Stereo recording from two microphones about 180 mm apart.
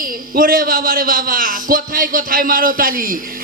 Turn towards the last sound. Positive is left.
turn(degrees=-50)  # may be behind; listen again after turning